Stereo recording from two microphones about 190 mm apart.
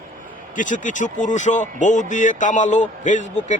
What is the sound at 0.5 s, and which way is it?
Speech, 40° left (ahead or behind).